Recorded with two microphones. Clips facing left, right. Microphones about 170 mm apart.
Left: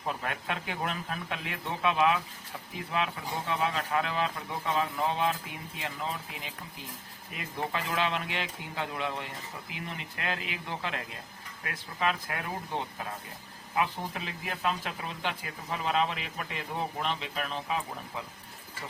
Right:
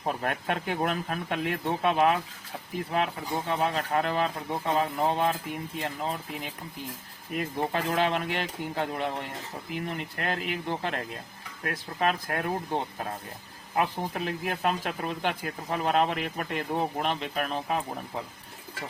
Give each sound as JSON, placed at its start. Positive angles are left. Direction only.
{"t": 0.0, "sound": "speech", "side_deg": -45}
{"t": 7.3, "sound": "speech", "side_deg": -45}